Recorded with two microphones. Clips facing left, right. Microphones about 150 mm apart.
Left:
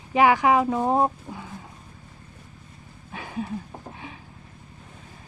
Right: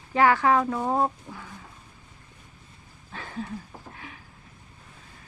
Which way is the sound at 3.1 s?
10° left (ahead or behind).